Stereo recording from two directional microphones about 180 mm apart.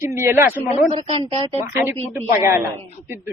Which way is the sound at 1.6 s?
10° right (ahead or behind).